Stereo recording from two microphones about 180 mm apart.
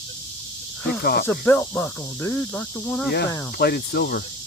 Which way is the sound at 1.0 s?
60° left (ahead or behind).